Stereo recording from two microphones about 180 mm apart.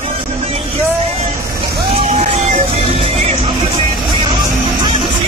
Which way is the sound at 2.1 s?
40° right (ahead or behind).